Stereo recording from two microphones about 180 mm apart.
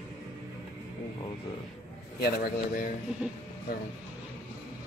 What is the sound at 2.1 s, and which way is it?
Speech, 55° left (ahead or behind).